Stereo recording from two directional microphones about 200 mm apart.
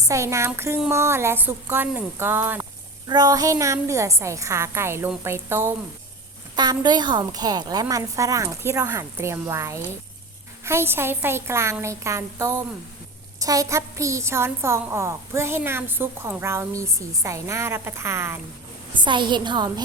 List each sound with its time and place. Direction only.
0.1 s a woman's voice: 15° right (ahead or behind)